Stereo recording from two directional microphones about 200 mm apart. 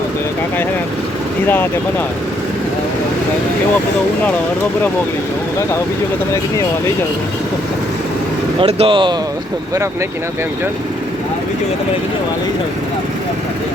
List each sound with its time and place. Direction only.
8.6 s speech: 25° right (ahead or behind)